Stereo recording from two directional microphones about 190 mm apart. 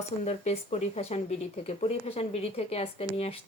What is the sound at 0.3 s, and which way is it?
A woman's voice, 35° left (ahead or behind).